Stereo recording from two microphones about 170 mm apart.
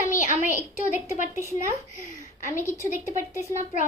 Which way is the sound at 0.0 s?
50° left (ahead or behind).